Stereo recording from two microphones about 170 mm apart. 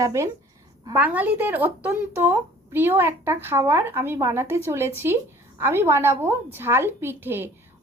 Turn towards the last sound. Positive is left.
turn(degrees=-10)  # may be behind; listen again after turning